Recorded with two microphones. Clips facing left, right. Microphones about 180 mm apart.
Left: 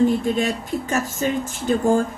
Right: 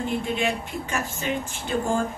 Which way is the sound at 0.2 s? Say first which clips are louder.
Left 4 dB; 40° left (ahead or behind).